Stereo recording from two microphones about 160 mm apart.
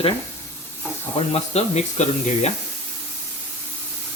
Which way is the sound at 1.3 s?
40° left (ahead or behind).